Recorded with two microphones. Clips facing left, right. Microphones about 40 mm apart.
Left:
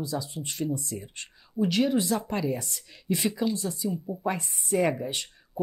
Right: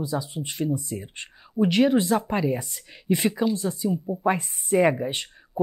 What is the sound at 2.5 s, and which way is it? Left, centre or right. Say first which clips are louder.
Speech: right 3 dB; centre.